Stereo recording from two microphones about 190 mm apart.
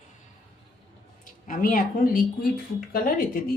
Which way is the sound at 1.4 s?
45° left (ahead or behind).